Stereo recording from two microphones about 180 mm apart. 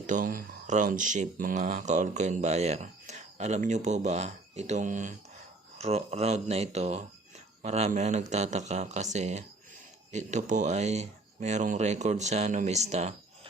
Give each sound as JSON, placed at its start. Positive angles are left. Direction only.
{"t": 0.1, "sound": "speech", "side_deg": -50}